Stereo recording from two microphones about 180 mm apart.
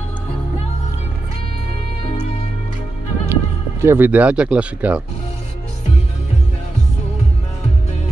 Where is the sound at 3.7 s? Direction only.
15° right (ahead or behind).